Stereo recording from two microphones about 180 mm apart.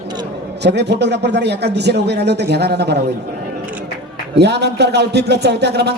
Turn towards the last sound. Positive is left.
turn(degrees=-65)  # may be behind; listen again after turning